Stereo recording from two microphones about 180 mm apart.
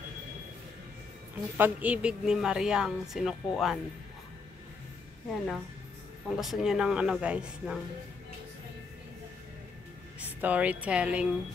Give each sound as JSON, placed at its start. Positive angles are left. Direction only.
{"t": 1.6, "sound": "a woman's voice", "side_deg": -10}
{"t": 5.3, "sound": "a woman's voice", "side_deg": 5}
{"t": 10.2, "sound": "a woman's voice", "side_deg": -10}